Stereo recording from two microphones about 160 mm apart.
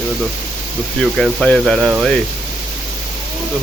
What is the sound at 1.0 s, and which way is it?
Speech, 5° left (ahead or behind).